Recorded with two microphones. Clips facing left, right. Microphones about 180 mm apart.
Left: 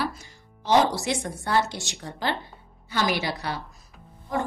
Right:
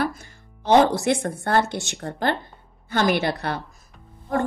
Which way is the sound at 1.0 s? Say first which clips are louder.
Right 6 dB; 55° right (ahead or behind).